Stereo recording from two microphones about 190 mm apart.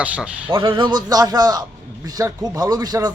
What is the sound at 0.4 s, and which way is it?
A man's voice, 25° right (ahead or behind).